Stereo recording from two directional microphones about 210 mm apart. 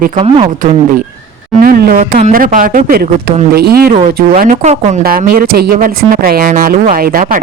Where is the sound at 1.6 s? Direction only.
45° right (ahead or behind).